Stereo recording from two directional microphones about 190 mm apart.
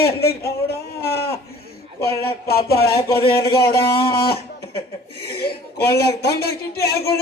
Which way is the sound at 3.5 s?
55° left (ahead or behind).